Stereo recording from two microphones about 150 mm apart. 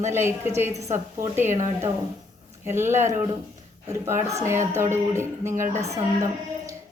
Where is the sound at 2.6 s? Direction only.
15° right (ahead or behind).